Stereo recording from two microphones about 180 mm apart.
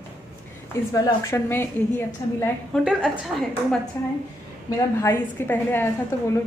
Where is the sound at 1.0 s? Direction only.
15° left (ahead or behind).